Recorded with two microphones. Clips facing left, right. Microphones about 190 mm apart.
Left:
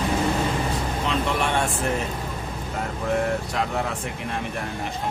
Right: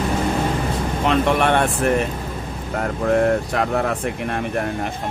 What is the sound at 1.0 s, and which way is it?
Speech, 60° right (ahead or behind).